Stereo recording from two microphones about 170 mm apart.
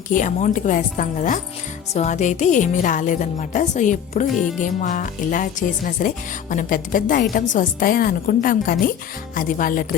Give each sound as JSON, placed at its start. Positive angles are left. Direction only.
{"t": 0.1, "sound": "a woman's voice", "side_deg": 50}